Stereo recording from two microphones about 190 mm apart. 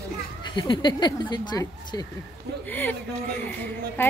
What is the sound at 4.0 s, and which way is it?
Speech, 10° left (ahead or behind).